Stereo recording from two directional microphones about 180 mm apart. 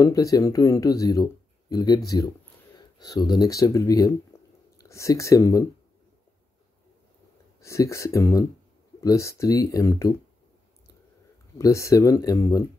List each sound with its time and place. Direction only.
0.0 s speech: 20° left (ahead or behind)
7.6 s speech: 15° left (ahead or behind)
11.5 s speech: 15° left (ahead or behind)